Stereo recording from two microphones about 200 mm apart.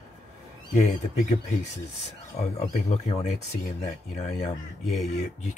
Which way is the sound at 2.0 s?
35° left (ahead or behind).